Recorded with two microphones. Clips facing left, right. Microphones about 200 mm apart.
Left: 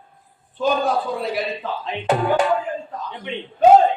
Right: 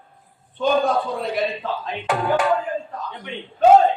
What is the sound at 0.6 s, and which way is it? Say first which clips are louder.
A man's voice: right 1 dB; 5° left (ahead or behind).